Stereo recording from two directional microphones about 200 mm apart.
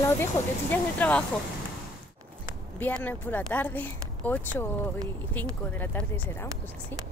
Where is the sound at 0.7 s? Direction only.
5° left (ahead or behind).